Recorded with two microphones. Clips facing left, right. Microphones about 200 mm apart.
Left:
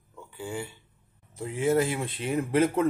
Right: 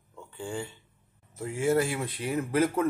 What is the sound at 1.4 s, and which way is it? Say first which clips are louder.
A man's voice: left 1 dB; 20° left (ahead or behind).